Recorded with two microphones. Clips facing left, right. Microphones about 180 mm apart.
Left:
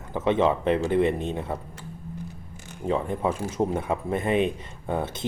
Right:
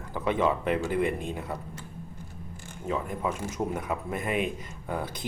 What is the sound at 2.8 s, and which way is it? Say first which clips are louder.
Speech: left 5 dB; 30° left (ahead or behind).